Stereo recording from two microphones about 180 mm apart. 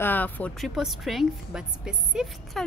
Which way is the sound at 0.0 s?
10° left (ahead or behind).